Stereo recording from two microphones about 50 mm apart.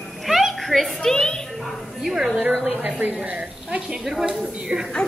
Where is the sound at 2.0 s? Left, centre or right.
Centre.